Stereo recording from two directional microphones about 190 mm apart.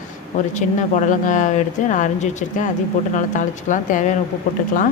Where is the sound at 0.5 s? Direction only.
40° left (ahead or behind).